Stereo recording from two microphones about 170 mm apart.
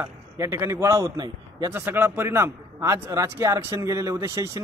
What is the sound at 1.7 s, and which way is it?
A man's voice, 10° right (ahead or behind).